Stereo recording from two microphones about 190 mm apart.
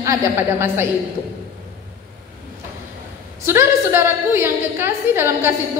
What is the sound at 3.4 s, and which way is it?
A woman's voice, 10° right (ahead or behind).